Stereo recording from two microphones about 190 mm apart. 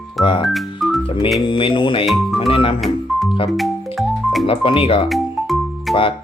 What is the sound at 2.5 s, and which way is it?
Speech, 30° left (ahead or behind).